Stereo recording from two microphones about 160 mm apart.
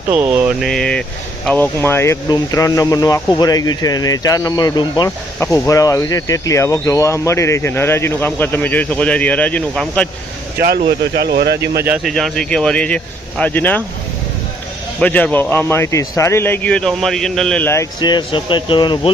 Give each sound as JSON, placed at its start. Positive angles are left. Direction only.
{"t": 0.1, "sound": "mantra", "side_deg": -10}
{"t": 0.6, "sound": "a man's voice", "side_deg": 5}
{"t": 10.6, "sound": "speech", "side_deg": -70}
{"t": 12.0, "sound": "a man's voice", "side_deg": 0}
{"t": 15.0, "sound": "a man's voice", "side_deg": 10}
{"t": 18.0, "sound": "speech", "side_deg": 30}